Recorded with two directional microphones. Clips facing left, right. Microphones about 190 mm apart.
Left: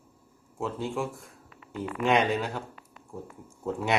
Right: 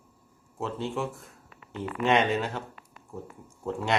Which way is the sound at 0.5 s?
Centre (ahead or behind).